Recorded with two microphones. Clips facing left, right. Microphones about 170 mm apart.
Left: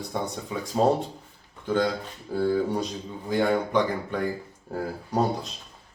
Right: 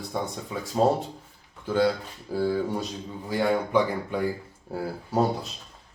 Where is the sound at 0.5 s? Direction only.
Centre (ahead or behind).